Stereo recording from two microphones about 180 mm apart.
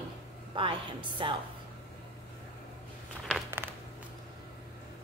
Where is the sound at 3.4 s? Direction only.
10° right (ahead or behind).